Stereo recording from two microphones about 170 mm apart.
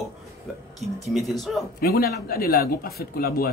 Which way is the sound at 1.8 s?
65° left (ahead or behind).